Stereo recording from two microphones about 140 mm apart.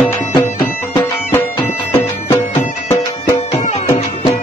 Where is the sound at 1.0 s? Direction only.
25° left (ahead or behind).